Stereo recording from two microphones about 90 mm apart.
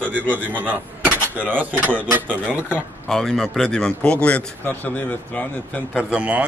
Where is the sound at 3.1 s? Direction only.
5° left (ahead or behind).